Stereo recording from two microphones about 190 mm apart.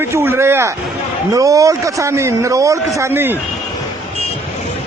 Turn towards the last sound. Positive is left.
turn(degrees=-10)  # may be behind; listen again after turning